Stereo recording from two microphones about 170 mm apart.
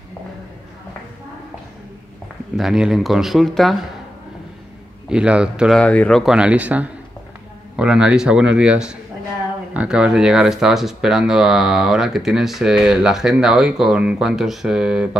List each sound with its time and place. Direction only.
2.5 s speech: centre (ahead or behind)
5.1 s speech: 5° right (ahead or behind)
5.8 s speech: 5° left (ahead or behind)